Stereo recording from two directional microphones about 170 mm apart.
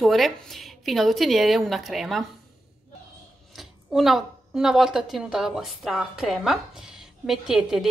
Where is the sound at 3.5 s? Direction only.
Centre (ahead or behind).